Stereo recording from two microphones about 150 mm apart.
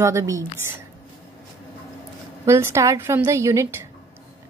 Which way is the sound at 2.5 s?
15° right (ahead or behind).